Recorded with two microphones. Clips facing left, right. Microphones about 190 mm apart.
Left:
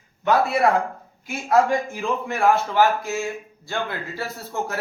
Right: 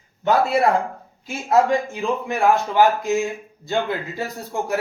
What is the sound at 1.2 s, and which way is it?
A man's voice, 20° right (ahead or behind).